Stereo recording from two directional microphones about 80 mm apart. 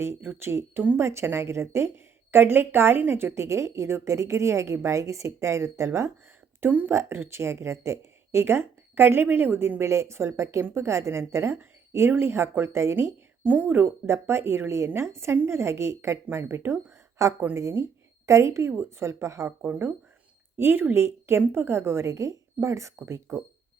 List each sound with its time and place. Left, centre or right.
0.0 s speech: right
6.6 s speech: right
13.4 s speech: centre; by 19.5 s right
19.5 s speech: right